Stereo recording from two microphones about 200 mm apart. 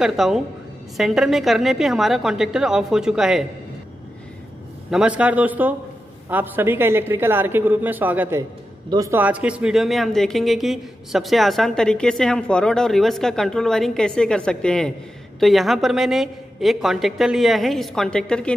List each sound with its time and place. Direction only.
0.0 s speech: centre (ahead or behind)
4.9 s a woman's voice: 5° right (ahead or behind)